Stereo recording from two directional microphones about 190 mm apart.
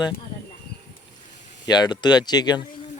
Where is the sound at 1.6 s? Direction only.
20° left (ahead or behind).